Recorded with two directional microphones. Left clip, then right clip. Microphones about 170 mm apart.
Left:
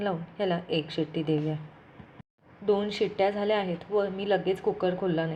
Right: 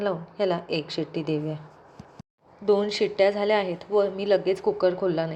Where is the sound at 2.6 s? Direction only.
30° right (ahead or behind).